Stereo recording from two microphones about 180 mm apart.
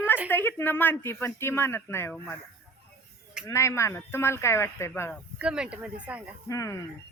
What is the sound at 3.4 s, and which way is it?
Speech, 15° left (ahead or behind).